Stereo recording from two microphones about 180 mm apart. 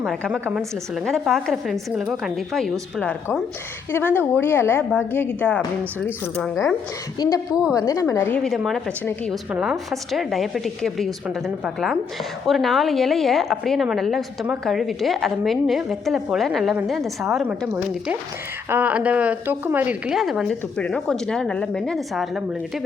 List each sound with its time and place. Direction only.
0.0 s a woman's voice: 5° right (ahead or behind)
7.2 s a woman's voice: 20° left (ahead or behind)
7.5 s a woman's voice: 5° right (ahead or behind)
7.8 s a woman's voice: 20° left (ahead or behind)
8.4 s a woman's voice: centre (ahead or behind)
18.7 s a woman's voice: 10° right (ahead or behind)